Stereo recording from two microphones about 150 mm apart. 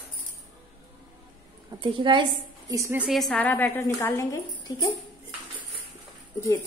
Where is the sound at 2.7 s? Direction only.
15° right (ahead or behind).